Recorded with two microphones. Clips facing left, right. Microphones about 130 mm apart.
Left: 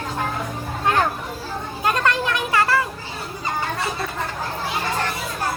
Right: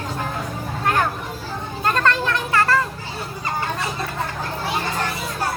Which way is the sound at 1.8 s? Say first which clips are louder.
Right 1 dB; 15° left (ahead or behind).